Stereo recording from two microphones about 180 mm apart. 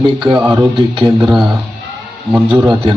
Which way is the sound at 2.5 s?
25° right (ahead or behind).